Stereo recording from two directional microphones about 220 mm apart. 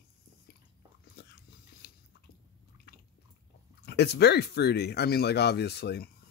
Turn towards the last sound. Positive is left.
turn(degrees=50)  # may be behind; listen again after turning